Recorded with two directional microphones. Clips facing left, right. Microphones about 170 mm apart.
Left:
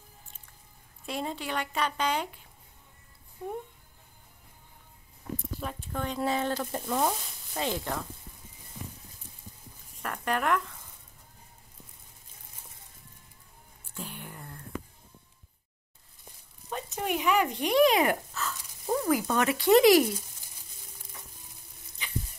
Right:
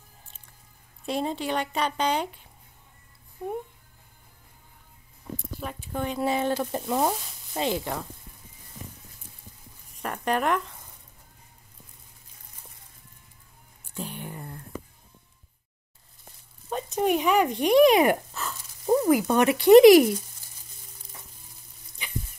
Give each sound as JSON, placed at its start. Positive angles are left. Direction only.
{"t": 1.0, "sound": "speech", "side_deg": -25}
{"t": 5.6, "sound": "a woman's voice", "side_deg": -5}
{"t": 10.0, "sound": "speech", "side_deg": -25}
{"t": 13.9, "sound": "a sound", "side_deg": -20}
{"t": 16.7, "sound": "speech", "side_deg": -25}